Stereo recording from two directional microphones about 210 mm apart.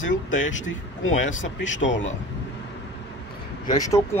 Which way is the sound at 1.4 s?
60° left (ahead or behind).